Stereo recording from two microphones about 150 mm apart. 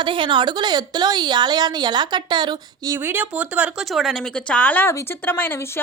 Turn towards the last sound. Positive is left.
turn(degrees=15)  # may be behind; listen again after turning